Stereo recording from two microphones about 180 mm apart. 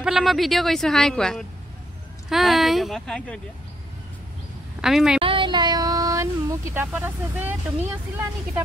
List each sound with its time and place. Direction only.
0.0 s speech: centre (ahead or behind)
4.8 s speech: 5° right (ahead or behind)
5.2 s speech: 30° right (ahead or behind); by 7.9 s 10° right (ahead or behind)